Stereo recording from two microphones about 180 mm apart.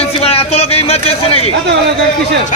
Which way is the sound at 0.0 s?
35° left (ahead or behind).